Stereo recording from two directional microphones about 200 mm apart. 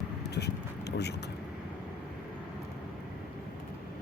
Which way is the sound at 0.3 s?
55° left (ahead or behind).